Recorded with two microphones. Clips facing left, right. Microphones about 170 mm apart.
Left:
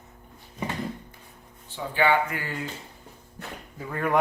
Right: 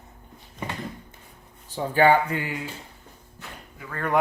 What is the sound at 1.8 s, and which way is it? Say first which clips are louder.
Speech: right 4 dB; 40° right (ahead or behind).